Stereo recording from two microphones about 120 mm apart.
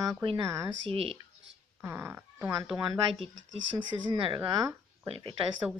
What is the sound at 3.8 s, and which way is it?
Speech, 40° right (ahead or behind).